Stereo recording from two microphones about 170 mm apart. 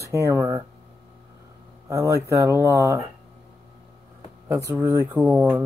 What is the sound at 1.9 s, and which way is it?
Speech, 15° right (ahead or behind).